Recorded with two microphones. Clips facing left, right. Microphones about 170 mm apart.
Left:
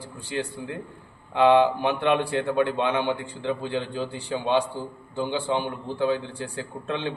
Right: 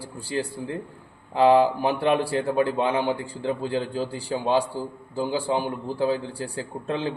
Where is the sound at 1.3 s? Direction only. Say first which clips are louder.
Even; 35° right (ahead or behind).